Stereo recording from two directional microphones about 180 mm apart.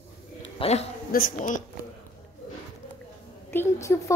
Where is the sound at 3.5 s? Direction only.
15° left (ahead or behind).